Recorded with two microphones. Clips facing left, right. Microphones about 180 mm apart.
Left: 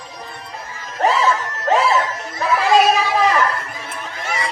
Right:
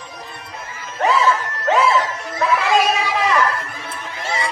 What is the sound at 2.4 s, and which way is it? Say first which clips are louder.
Children playing: right 1 dB; 35° left (ahead or behind).